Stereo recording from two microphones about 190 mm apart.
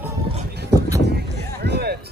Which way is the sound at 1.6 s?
55° right (ahead or behind).